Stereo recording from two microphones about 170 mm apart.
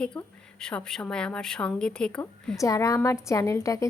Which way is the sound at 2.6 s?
20° left (ahead or behind).